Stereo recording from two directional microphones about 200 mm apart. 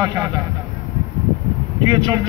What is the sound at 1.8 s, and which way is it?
Speech, 20° right (ahead or behind).